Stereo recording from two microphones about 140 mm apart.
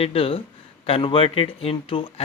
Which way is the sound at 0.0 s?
45° left (ahead or behind).